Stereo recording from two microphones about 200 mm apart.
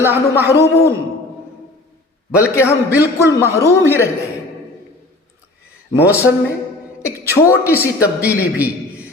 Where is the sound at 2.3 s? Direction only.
15° left (ahead or behind).